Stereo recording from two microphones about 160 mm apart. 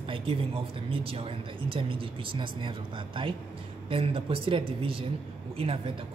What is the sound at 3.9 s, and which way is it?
Speech, 35° right (ahead or behind).